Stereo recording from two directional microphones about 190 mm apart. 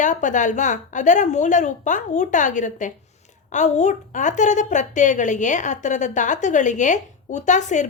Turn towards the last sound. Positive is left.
turn(degrees=40)  # may be behind; listen again after turning